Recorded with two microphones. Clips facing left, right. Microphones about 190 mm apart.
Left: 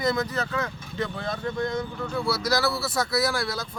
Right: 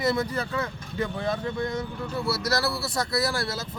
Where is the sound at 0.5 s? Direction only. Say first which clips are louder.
Even; 30° right (ahead or behind).